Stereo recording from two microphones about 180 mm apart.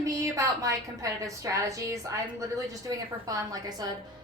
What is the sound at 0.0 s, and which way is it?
A woman's voice, 20° right (ahead or behind).